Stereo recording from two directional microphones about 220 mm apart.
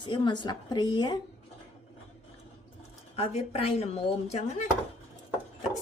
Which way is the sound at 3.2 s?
25° left (ahead or behind).